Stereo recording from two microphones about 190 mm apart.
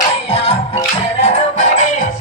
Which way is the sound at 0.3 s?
30° left (ahead or behind).